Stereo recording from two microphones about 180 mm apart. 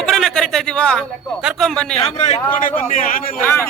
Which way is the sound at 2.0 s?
35° left (ahead or behind).